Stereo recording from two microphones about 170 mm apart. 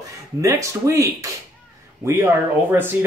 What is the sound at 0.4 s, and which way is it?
Speech, 20° right (ahead or behind).